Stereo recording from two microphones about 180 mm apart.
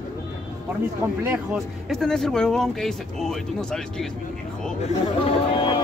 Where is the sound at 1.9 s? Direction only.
Centre (ahead or behind).